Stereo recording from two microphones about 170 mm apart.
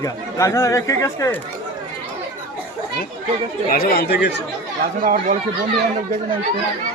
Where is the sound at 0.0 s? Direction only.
20° left (ahead or behind).